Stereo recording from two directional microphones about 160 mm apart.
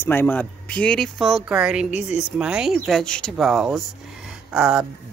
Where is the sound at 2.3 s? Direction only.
5° right (ahead or behind).